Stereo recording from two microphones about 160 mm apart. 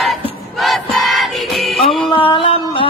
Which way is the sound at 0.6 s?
Centre (ahead or behind).